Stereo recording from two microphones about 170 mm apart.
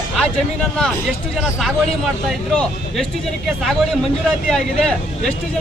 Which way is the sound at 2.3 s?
5° left (ahead or behind).